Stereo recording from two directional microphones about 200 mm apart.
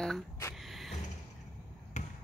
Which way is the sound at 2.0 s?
35° left (ahead or behind).